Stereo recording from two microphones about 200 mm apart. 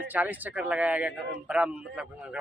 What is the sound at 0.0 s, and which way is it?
A man's voice, 10° right (ahead or behind).